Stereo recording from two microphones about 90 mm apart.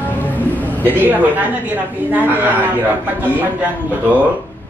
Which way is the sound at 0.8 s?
20° right (ahead or behind).